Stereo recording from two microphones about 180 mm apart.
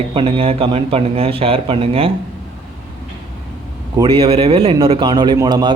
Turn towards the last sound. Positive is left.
turn(degrees=-20)  # may be behind; listen again after turning